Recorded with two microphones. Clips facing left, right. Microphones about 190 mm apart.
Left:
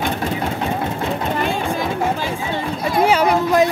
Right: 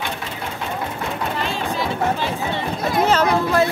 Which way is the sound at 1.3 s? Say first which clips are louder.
Left 4 dB; 50° left (ahead or behind).